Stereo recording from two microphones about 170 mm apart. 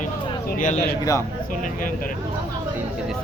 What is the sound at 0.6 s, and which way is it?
Speech, 45° left (ahead or behind).